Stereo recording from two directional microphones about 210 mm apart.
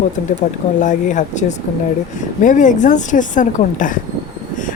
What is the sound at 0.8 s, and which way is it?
A woman's voice, 35° left (ahead or behind).